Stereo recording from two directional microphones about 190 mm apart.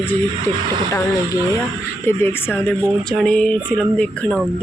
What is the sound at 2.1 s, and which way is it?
Speech, 10° left (ahead or behind).